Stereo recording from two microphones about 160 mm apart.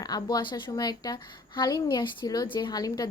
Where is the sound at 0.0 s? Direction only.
25° left (ahead or behind).